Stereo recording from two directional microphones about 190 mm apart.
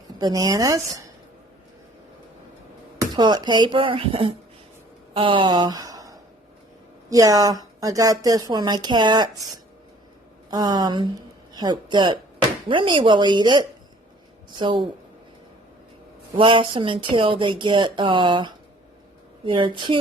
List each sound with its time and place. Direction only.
0.2 s a woman's voice: 20° right (ahead or behind)
3.0 s a woman's voice: 20° right (ahead or behind)
10.5 s a woman's voice: 20° right (ahead or behind)
16.3 s a woman's voice: 25° right (ahead or behind)